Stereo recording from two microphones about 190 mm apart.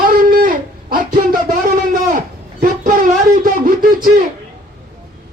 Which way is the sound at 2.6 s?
50° right (ahead or behind).